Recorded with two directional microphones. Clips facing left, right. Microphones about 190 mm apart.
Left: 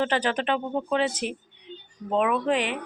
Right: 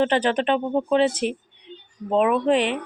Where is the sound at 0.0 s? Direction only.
25° right (ahead or behind).